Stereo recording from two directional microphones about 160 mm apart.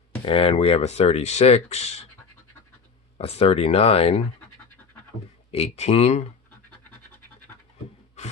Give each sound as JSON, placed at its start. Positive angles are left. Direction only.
{"t": 0.2, "sound": "speech", "side_deg": 35}
{"t": 3.2, "sound": "speech", "side_deg": 40}
{"t": 5.5, "sound": "speech", "side_deg": 40}
{"t": 8.2, "sound": "rub", "side_deg": 45}